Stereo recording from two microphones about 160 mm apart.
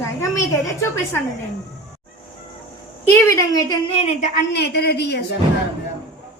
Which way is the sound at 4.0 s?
45° left (ahead or behind).